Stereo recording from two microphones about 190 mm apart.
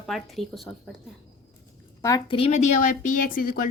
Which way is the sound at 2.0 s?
15° left (ahead or behind).